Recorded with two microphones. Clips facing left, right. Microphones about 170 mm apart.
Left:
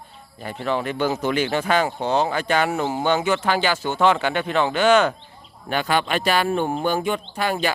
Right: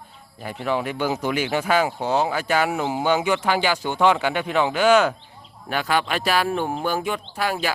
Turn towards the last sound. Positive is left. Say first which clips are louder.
# left 1 dB
turn(degrees=-5)  # may be behind; listen again after turning